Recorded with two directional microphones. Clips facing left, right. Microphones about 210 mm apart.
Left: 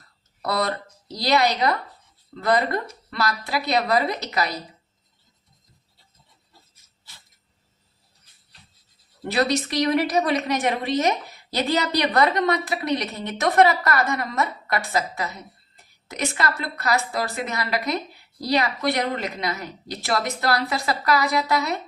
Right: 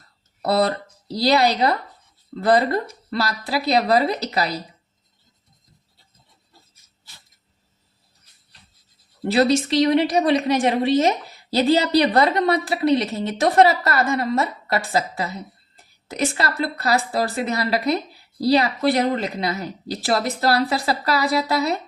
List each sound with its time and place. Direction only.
0.4 s a woman's voice: 35° right (ahead or behind)
9.2 s a woman's voice: 30° right (ahead or behind)